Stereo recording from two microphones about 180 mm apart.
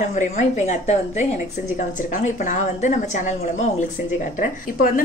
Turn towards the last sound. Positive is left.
turn(degrees=50)  # may be behind; listen again after turning